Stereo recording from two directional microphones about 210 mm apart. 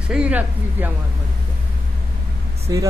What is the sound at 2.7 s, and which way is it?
Speech, 15° right (ahead or behind).